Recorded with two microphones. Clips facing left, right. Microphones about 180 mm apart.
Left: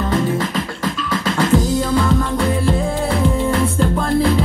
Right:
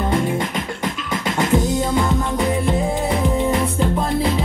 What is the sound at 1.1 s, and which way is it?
Music, 20° right (ahead or behind).